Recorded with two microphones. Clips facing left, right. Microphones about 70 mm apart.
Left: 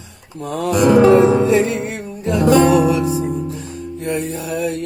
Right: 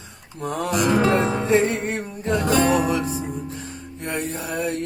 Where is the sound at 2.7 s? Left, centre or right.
Right.